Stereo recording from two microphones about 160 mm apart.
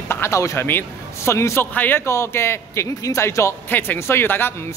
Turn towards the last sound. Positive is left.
turn(degrees=15)  # may be behind; listen again after turning